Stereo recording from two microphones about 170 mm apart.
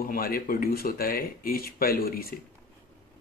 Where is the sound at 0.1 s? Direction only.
60° left (ahead or behind).